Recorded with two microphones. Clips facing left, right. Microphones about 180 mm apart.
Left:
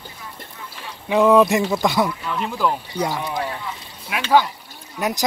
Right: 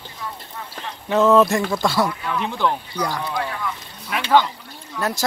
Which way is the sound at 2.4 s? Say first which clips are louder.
Left 1 dB; 5° left (ahead or behind).